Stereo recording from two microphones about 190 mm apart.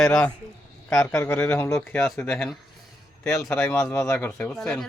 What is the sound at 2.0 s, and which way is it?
Speech, centre (ahead or behind).